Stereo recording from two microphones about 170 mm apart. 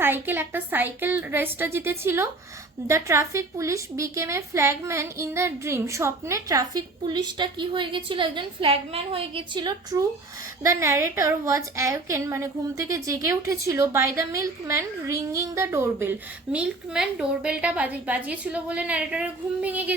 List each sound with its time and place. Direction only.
0.0 s a woman's voice: 10° right (ahead or behind)